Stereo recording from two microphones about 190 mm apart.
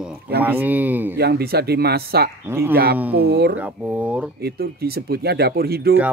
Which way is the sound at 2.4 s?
15° right (ahead or behind).